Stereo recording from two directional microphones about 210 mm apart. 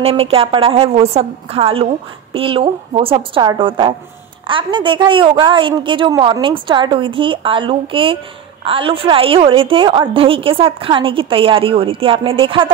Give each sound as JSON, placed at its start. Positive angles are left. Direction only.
{"t": 0.0, "sound": "a woman's voice", "side_deg": -25}